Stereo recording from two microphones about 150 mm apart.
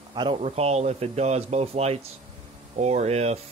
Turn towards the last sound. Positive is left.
turn(degrees=-45)  # may be behind; listen again after turning